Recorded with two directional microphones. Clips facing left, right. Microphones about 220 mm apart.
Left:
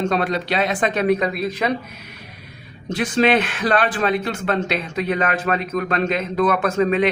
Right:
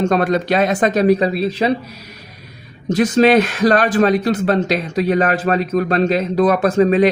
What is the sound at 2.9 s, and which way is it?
A man's voice, 40° right (ahead or behind).